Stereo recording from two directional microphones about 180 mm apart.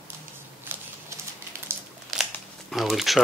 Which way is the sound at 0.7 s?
10° right (ahead or behind).